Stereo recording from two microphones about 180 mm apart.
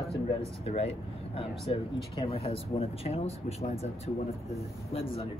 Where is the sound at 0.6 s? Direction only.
35° left (ahead or behind).